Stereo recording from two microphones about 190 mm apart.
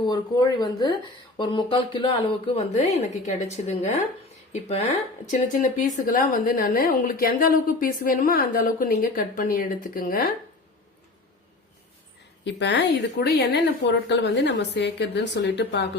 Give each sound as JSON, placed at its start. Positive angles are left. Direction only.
{"t": 0.0, "sound": "a woman's voice", "side_deg": 20}
{"t": 5.2, "sound": "a woman's voice", "side_deg": 45}
{"t": 12.5, "sound": "a woman's voice", "side_deg": 65}